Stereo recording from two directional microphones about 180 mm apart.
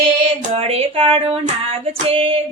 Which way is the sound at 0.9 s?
30° right (ahead or behind).